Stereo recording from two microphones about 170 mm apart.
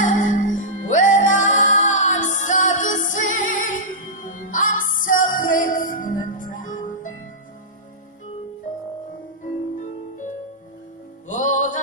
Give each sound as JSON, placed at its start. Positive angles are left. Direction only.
{"t": 0.0, "sound": "music", "side_deg": 45}
{"t": 11.2, "sound": "music", "side_deg": 50}